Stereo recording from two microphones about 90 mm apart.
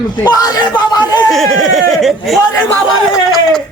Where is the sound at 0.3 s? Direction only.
45° left (ahead or behind).